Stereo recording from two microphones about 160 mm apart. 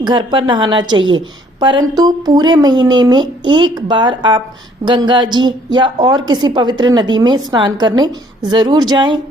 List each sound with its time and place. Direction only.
0.0 s a woman's voice: 30° right (ahead or behind)